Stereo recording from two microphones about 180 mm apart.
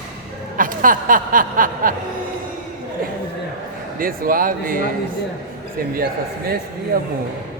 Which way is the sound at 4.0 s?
55° right (ahead or behind).